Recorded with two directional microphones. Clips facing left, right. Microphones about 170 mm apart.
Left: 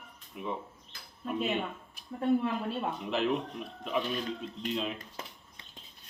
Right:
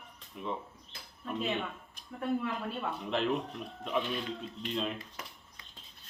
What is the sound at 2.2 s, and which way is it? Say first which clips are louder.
Speech: left 5 dB; 25° left (ahead or behind).